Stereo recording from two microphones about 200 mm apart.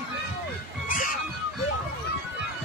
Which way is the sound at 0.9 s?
40° left (ahead or behind).